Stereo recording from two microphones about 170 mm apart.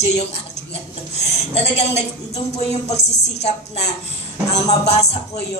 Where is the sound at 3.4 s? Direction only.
40° left (ahead or behind).